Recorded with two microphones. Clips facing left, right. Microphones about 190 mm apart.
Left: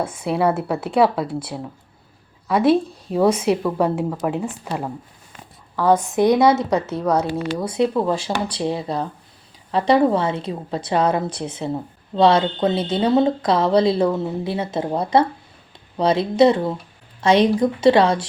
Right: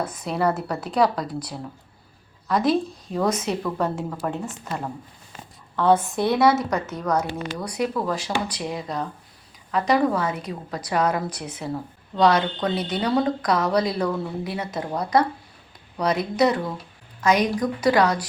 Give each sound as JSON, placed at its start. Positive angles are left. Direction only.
{"t": 0.3, "sound": "speech", "side_deg": 5}
{"t": 1.3, "sound": "a woman's voice", "side_deg": 25}
{"t": 2.5, "sound": "speech", "side_deg": 5}
{"t": 5.7, "sound": "a woman's voice", "side_deg": 10}